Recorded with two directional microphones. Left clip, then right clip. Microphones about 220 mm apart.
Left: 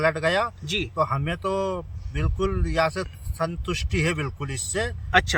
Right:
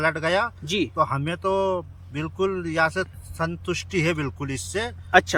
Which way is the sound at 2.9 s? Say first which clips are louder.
Right 3 dB; centre (ahead or behind).